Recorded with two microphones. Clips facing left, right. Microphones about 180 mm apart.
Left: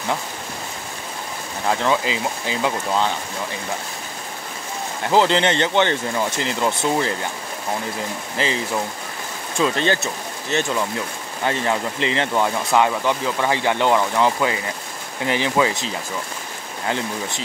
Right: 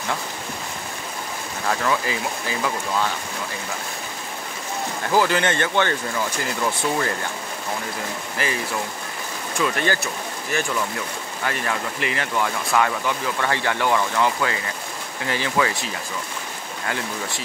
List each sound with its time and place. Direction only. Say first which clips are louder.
1.7 s speech: left 3 dB; 20° left (ahead or behind)
5.1 s speech: left 3 dB; 25° left (ahead or behind)
8.4 s speech: left 3 dB; 20° left (ahead or behind)
9.6 s speech: left 3 dB; 25° left (ahead or behind)